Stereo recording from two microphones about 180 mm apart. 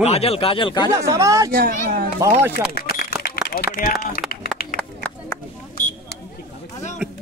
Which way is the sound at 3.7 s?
55° left (ahead or behind).